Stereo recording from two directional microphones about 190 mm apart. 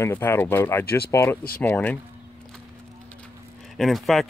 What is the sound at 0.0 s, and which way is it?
Speech, 10° left (ahead or behind).